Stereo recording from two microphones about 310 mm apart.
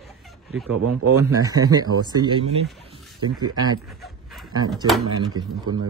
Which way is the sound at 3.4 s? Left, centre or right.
Centre.